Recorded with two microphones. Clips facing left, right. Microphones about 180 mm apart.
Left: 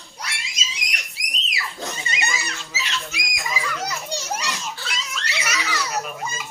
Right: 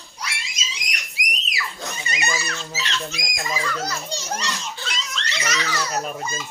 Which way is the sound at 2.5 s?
10° left (ahead or behind).